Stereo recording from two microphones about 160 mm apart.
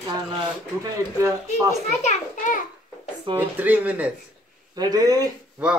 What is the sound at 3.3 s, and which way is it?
Speech, 10° right (ahead or behind).